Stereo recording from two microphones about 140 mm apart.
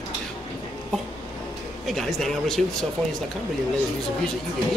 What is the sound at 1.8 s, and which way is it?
Speech, centre (ahead or behind).